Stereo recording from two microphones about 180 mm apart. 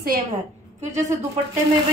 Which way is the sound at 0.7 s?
40° right (ahead or behind).